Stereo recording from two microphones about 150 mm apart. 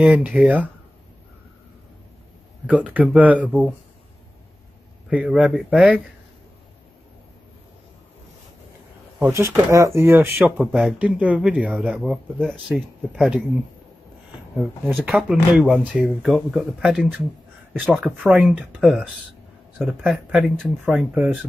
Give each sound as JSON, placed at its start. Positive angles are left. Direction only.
{"t": 0.0, "sound": "speech", "side_deg": -5}
{"t": 2.6, "sound": "speech", "side_deg": -10}
{"t": 5.1, "sound": "speech", "side_deg": -5}
{"t": 9.2, "sound": "speech", "side_deg": -15}
{"t": 15.0, "sound": "speech", "side_deg": 0}
{"t": 21.1, "sound": "speech", "side_deg": -10}